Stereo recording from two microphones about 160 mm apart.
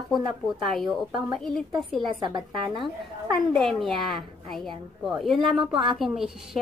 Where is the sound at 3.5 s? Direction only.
Centre (ahead or behind).